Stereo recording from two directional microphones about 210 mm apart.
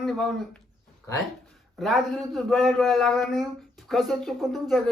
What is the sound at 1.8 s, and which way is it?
A man's voice, centre (ahead or behind).